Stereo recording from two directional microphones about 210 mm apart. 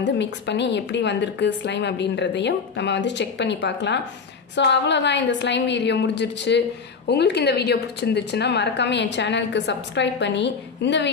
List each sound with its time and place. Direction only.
0.0 s a woman's voice: 55° left (ahead or behind)